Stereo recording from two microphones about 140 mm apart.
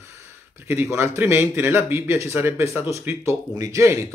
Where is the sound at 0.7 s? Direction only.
15° right (ahead or behind).